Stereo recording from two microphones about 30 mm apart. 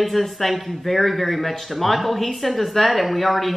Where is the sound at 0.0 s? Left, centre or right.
Centre.